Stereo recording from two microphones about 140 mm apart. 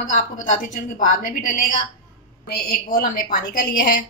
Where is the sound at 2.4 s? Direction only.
90° left.